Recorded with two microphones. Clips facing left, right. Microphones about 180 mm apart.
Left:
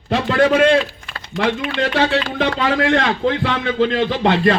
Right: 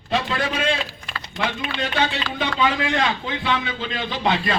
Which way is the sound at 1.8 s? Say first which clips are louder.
Left 6 dB; 85° left.